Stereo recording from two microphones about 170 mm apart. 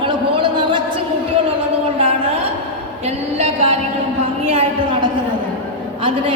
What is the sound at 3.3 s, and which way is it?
A woman's voice, 35° right (ahead or behind).